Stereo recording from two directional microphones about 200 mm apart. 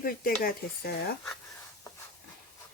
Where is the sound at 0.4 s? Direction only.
50° left (ahead or behind).